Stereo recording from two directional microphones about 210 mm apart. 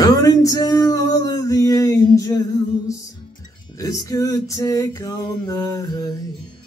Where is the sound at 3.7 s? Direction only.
15° left (ahead or behind).